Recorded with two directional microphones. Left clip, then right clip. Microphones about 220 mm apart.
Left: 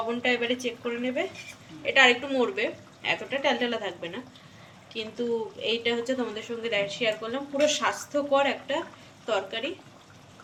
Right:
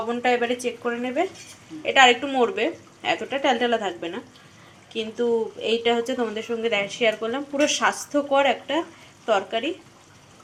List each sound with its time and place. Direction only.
0.1 s speech: 15° right (ahead or behind)
1.8 s speech: 25° right (ahead or behind)